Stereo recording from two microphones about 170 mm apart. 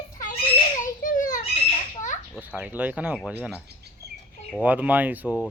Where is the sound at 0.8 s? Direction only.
50° left (ahead or behind).